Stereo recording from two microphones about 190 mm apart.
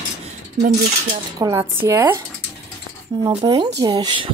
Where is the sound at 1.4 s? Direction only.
15° right (ahead or behind).